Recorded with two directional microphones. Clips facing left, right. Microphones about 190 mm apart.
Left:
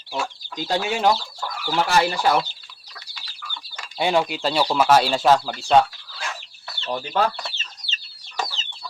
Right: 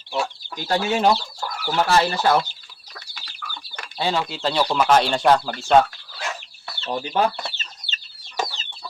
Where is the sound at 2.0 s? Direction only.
10° left (ahead or behind).